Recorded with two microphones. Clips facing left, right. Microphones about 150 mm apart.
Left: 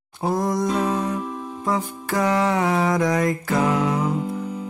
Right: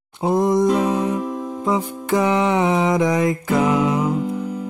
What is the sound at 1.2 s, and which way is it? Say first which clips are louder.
Music: right 5 dB; 90° right.